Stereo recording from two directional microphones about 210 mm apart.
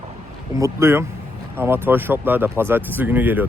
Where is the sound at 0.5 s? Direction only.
15° right (ahead or behind).